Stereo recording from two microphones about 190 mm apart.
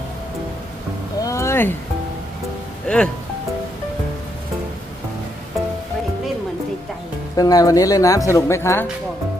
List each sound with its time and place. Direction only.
1.2 s a sound: 15° left (ahead or behind)
2.8 s speech: 5° left (ahead or behind)
7.3 s speech: 20° left (ahead or behind)